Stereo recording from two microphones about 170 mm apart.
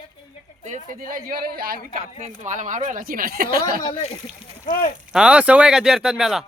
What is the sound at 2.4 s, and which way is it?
Speech, 50° right (ahead or behind).